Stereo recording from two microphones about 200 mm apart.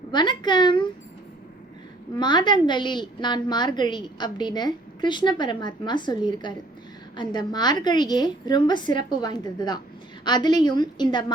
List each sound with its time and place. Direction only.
0.1 s a woman's voice: 20° left (ahead or behind)
2.1 s a woman's voice: 20° left (ahead or behind)